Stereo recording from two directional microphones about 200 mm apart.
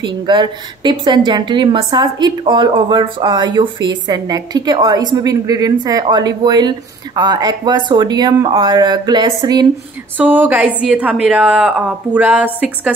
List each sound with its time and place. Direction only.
0.0 s a woman's voice: 25° right (ahead or behind)
10.1 s a woman's voice: 10° right (ahead or behind)